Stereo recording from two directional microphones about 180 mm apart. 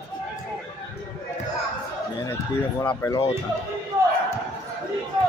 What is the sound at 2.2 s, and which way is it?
Speech, 15° left (ahead or behind).